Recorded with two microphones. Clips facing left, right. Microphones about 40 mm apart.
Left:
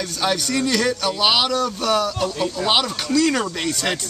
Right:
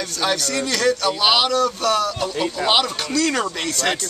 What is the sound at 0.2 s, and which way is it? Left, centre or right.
Speech, centre.